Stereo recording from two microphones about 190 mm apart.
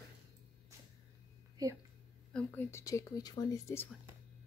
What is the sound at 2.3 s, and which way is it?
Speech, 5° left (ahead or behind).